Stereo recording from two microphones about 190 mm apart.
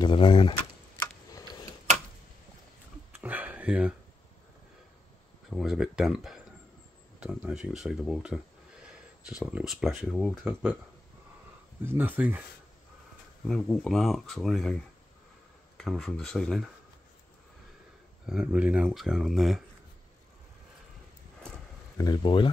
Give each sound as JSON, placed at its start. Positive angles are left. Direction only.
{"t": 0.0, "sound": "speech", "side_deg": 25}
{"t": 3.1, "sound": "a sound", "side_deg": -10}
{"t": 5.5, "sound": "speech", "side_deg": 0}
{"t": 11.8, "sound": "speech", "side_deg": -10}
{"t": 13.5, "sound": "speech", "side_deg": 5}
{"t": 15.8, "sound": "speech", "side_deg": 0}
{"t": 18.2, "sound": "speech", "side_deg": -5}
{"t": 21.9, "sound": "speech", "side_deg": 20}